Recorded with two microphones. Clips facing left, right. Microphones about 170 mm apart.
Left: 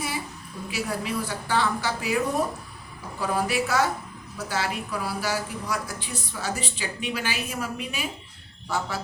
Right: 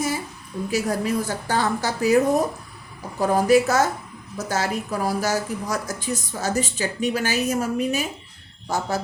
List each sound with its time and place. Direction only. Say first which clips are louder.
0.7 s a woman's voice: right 6 dB; 45° right (ahead or behind)